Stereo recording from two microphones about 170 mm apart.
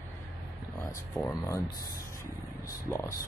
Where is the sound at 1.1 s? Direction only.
15° left (ahead or behind).